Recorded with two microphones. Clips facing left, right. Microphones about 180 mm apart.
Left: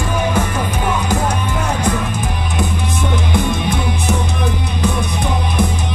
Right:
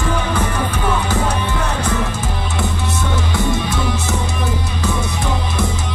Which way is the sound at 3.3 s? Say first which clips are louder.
Left 2 dB; 15° left (ahead or behind).